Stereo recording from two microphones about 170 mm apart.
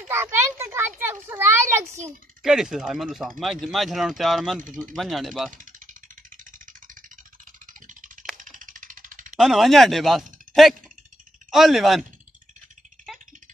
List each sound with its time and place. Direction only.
0.1 s a sound: 15° right (ahead or behind)
2.4 s speech: 5° right (ahead or behind)
5.5 s speech: 50° right (ahead or behind)
6.3 s vehicle: 50° right (ahead or behind)
7.8 s a sound: 50° right (ahead or behind)
9.4 s speech: centre (ahead or behind)